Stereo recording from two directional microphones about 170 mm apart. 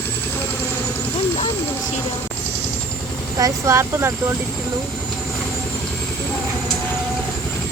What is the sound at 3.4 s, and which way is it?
Speech, 15° right (ahead or behind).